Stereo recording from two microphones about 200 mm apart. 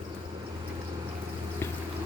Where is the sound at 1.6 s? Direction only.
10° left (ahead or behind).